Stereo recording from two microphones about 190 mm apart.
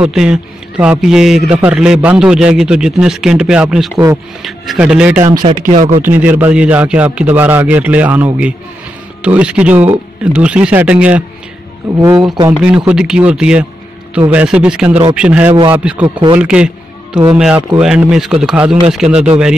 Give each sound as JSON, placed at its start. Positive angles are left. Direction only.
{"t": 0.0, "sound": "a man's voice", "side_deg": -5}
{"t": 5.5, "sound": "speech", "side_deg": -40}
{"t": 6.0, "sound": "a man's voice", "side_deg": -10}
{"t": 12.0, "sound": "a man's voice", "side_deg": -20}
{"t": 12.6, "sound": "a man's voice", "side_deg": -5}
{"t": 16.3, "sound": "music", "side_deg": -5}
{"t": 17.4, "sound": "a man's voice", "side_deg": -5}